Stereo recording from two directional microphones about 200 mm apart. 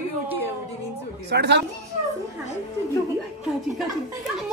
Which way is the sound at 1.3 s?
55° right (ahead or behind).